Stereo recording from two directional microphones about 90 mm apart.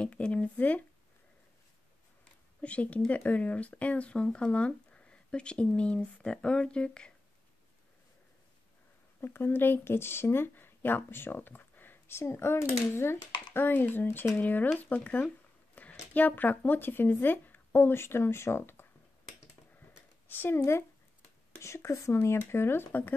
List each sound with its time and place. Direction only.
0.0 s speech: 10° left (ahead or behind)
2.6 s speech: 15° left (ahead or behind)
9.2 s speech: 25° left (ahead or behind)
20.2 s speech: 25° left (ahead or behind)